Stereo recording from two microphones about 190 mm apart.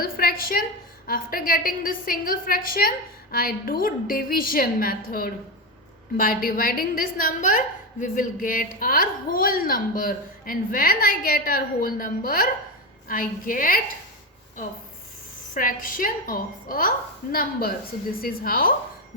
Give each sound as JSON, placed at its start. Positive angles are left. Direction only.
{"t": 0.0, "sound": "a sound", "side_deg": 50}
{"t": 1.0, "sound": "a woman's voice", "side_deg": 50}
{"t": 15.5, "sound": "a woman's voice", "side_deg": 45}